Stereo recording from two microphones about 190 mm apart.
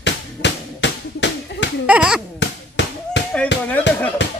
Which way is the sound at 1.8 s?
5° right (ahead or behind).